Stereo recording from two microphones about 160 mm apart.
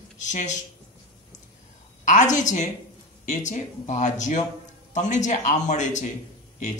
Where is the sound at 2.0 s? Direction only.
50° left (ahead or behind).